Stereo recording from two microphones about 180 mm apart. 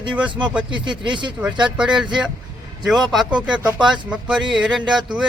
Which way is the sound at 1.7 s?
5° right (ahead or behind).